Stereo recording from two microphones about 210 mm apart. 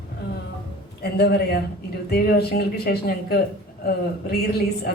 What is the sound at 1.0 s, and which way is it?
Speech, 50° left (ahead or behind).